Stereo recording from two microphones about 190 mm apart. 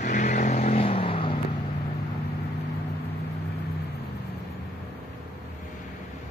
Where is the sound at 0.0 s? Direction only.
45° left (ahead or behind).